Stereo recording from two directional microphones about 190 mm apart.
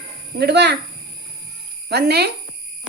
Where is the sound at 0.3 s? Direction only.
60° right (ahead or behind).